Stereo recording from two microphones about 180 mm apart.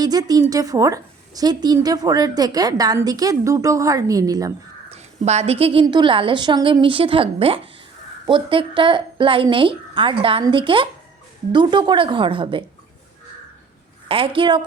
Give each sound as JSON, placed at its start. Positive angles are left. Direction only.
{"t": 0.0, "sound": "a woman's voice", "side_deg": -20}
{"t": 4.9, "sound": "a woman's voice", "side_deg": -35}
{"t": 14.1, "sound": "a woman's voice", "side_deg": -30}